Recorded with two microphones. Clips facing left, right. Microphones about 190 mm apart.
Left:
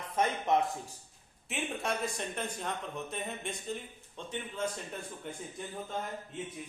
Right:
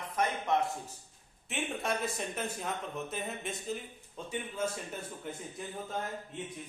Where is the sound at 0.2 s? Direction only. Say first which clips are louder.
Left 2 dB; 20° left (ahead or behind).